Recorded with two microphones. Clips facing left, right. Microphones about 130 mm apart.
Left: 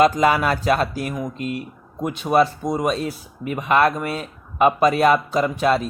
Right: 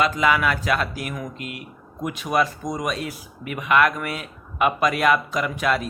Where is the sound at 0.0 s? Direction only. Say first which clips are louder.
Left 4 dB; 40° left (ahead or behind).